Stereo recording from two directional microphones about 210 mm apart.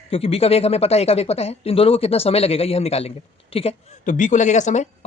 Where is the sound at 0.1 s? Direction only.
30° left (ahead or behind).